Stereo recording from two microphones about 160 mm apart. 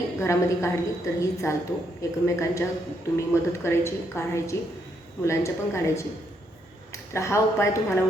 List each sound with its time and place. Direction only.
0.2 s a woman's voice: 20° left (ahead or behind)